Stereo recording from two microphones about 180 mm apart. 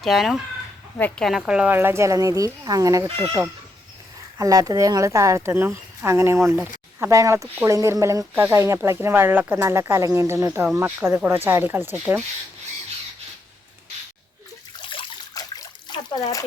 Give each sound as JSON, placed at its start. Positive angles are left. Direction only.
{"t": 0.0, "sound": "speech", "side_deg": 0}
{"t": 14.8, "sound": "water", "side_deg": 30}